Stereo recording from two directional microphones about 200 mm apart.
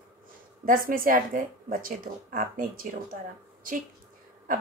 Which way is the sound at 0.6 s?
45° right (ahead or behind).